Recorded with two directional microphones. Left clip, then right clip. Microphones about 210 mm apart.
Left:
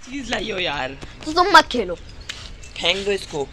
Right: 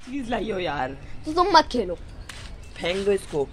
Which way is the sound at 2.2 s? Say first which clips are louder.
Left 8 dB; 30° right (ahead or behind).